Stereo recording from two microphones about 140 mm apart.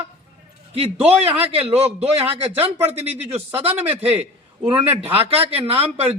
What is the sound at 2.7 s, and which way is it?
Speech, 15° right (ahead or behind).